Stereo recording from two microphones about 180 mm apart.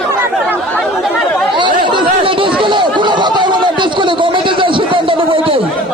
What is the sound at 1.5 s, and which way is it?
Chatter, 25° right (ahead or behind).